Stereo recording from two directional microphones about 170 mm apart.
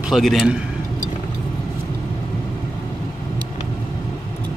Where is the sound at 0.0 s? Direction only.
Centre (ahead or behind).